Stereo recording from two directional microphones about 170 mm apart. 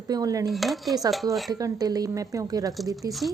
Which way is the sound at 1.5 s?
20° right (ahead or behind).